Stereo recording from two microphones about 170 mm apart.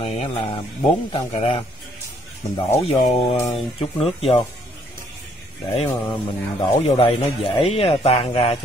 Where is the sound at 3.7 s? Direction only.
35° left (ahead or behind).